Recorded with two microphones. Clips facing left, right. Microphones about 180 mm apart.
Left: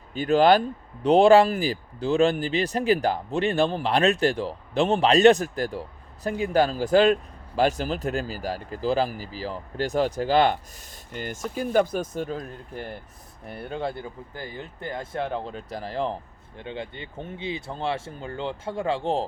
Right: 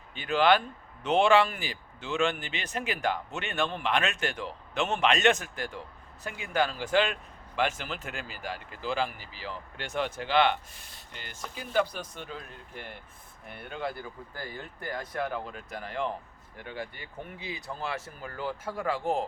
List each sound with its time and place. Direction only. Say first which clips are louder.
0.1 s speech: left 6 dB; 40° left (ahead or behind)
16.6 s speech: left 5 dB; 25° left (ahead or behind)